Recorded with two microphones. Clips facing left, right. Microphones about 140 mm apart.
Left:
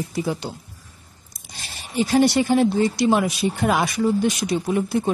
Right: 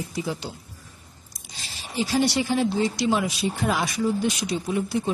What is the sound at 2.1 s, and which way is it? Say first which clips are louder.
Speech: left 6 dB; 55° left (ahead or behind).